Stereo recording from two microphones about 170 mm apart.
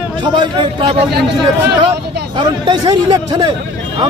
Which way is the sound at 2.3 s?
25° right (ahead or behind).